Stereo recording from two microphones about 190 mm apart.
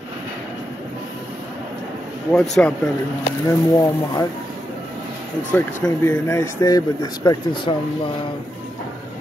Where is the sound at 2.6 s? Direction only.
5° left (ahead or behind).